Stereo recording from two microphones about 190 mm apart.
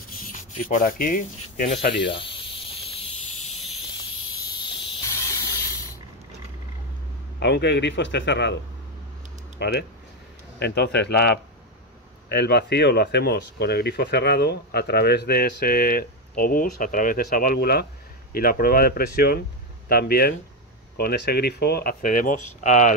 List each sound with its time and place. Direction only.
0.2 s speech: 45° left (ahead or behind)
2.0 s snake: 25° left (ahead or behind)
4.5 s cricket: 25° left (ahead or behind)
7.3 s a man's voice: 60° left (ahead or behind)
9.6 s speech: 60° left (ahead or behind); by 22.9 s 40° left (ahead or behind)